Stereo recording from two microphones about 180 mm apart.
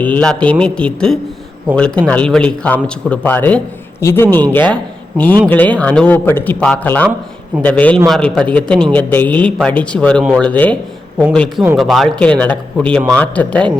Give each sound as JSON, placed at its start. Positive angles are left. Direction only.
{"t": 0.0, "sound": "a man's voice", "side_deg": 5}